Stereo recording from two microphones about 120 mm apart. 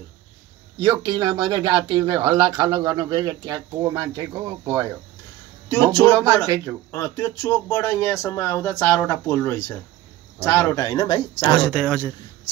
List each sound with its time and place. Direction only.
0.7 s speech: 35° right (ahead or behind)
5.9 s speech: 10° left (ahead or behind)
6.5 s speech: 25° right (ahead or behind)
6.9 s speech: 20° left (ahead or behind)
10.9 s speech: 35° left (ahead or behind)
11.5 s speech: 5° left (ahead or behind)